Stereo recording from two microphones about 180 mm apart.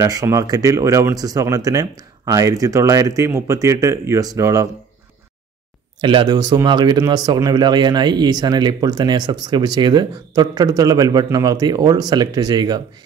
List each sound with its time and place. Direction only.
0.0 s speech: 20° right (ahead or behind)
5.9 s speech: 25° right (ahead or behind)